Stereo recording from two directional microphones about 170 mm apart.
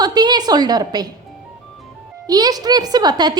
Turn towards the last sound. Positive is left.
turn(degrees=-25)  # may be behind; listen again after turning